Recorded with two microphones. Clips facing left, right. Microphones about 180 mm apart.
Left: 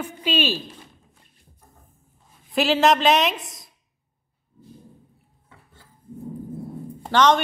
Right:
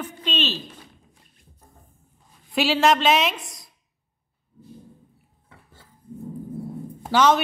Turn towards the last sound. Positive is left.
turn(degrees=-5)  # may be behind; listen again after turning